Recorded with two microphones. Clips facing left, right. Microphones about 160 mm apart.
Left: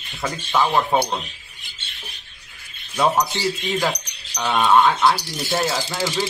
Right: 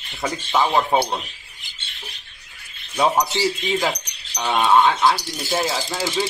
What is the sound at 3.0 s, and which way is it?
Speech, 10° right (ahead or behind).